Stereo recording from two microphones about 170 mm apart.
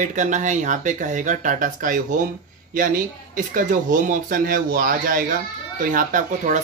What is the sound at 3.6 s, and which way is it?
Speech, 50° right (ahead or behind).